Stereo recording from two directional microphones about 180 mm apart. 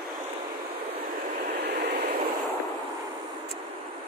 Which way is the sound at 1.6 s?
65° right (ahead or behind).